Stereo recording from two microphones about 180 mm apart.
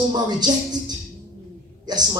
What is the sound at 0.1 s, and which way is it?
Speech, 25° right (ahead or behind).